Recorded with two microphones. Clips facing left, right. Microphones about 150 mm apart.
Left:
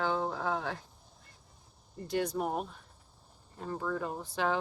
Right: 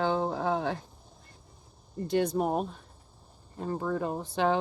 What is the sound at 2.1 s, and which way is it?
Speech, 25° right (ahead or behind).